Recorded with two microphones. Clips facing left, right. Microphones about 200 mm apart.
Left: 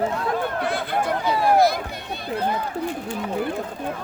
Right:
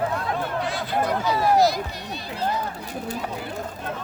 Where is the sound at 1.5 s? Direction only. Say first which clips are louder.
Left 1 dB; 55° left (ahead or behind).